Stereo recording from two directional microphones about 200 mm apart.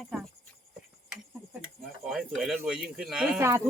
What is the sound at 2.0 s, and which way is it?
Speech, centre (ahead or behind).